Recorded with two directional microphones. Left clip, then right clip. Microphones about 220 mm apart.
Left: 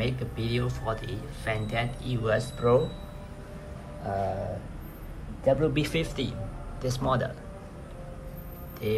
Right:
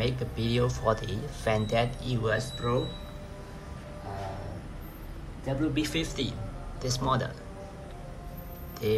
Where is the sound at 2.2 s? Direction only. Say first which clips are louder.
Left 4 dB; centre (ahead or behind).